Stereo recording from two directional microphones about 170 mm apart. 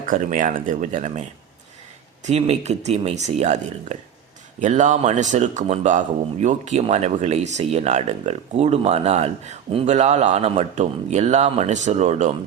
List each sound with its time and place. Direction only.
0.0 s speech: 50° right (ahead or behind)
2.2 s speech: 40° right (ahead or behind)